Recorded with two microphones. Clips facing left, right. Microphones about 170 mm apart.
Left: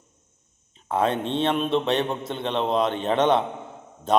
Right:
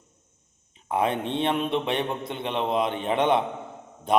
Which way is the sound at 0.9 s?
15° right (ahead or behind).